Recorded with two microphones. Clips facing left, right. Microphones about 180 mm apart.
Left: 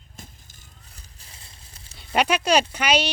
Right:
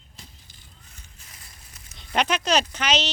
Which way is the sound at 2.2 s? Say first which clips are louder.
Left 3 dB; 10° left (ahead or behind).